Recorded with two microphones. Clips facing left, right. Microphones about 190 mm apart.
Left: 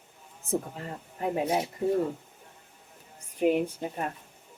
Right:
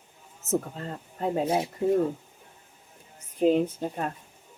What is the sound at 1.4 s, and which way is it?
Speech, 25° right (ahead or behind).